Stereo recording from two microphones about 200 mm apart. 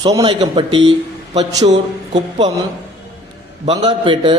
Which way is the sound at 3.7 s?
25° right (ahead or behind).